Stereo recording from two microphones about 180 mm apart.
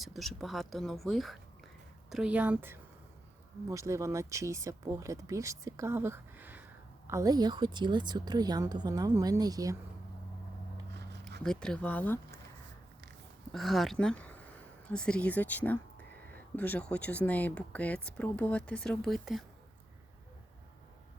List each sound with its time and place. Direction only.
0.0 s speech: centre (ahead or behind); by 9.7 s 20° right (ahead or behind)
11.1 s a sound: 65° right (ahead or behind)
11.4 s speech: 5° left (ahead or behind)
13.5 s speech: centre (ahead or behind)